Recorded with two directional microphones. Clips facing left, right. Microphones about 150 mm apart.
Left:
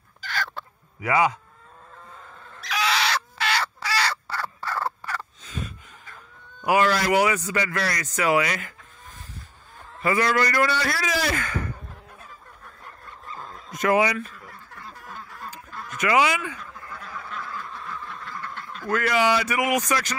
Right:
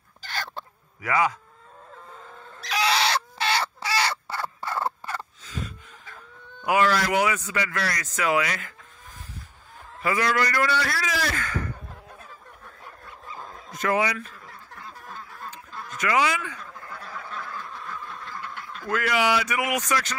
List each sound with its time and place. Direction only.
0.3 s chicken: 25° right (ahead or behind)
1.0 s speech: 20° left (ahead or behind)
2.6 s bird: 30° right (ahead or behind)
6.6 s a man's voice: 5° left (ahead or behind)
10.0 s a man's voice: centre (ahead or behind); by 11.6 s 15° left (ahead or behind)
13.7 s speech: 15° left (ahead or behind)
16.0 s speech: 15° left (ahead or behind)
18.4 s speech: 10° right (ahead or behind); by 20.2 s 10° left (ahead or behind)